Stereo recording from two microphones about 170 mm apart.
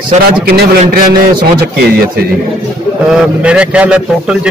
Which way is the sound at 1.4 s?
65° right (ahead or behind).